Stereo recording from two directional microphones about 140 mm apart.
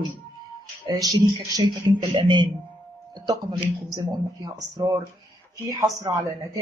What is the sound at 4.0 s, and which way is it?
Speech, 25° right (ahead or behind).